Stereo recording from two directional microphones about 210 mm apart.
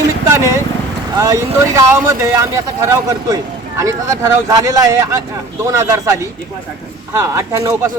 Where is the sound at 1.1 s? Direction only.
15° right (ahead or behind).